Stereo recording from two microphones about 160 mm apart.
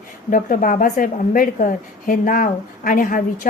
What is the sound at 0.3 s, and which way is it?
A woman's voice, 55° left (ahead or behind).